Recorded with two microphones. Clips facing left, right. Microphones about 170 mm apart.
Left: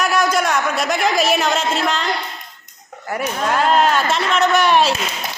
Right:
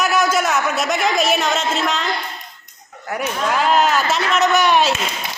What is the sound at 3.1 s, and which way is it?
A man's voice, centre (ahead or behind).